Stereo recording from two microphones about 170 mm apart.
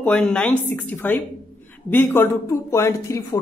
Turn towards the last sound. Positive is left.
turn(degrees=20)  # may be behind; listen again after turning